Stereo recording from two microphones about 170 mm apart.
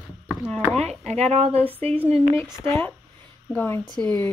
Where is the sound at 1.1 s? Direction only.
40° right (ahead or behind).